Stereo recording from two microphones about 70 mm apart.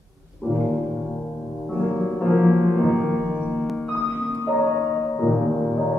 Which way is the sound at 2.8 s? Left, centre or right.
Centre.